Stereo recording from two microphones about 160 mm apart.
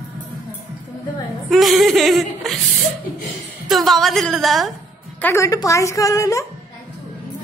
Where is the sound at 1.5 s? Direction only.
Centre (ahead or behind).